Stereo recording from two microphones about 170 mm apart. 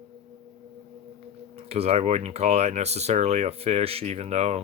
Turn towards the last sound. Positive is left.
turn(degrees=-40)  # may be behind; listen again after turning